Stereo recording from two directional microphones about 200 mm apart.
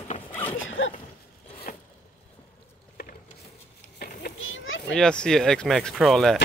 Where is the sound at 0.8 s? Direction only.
80° left.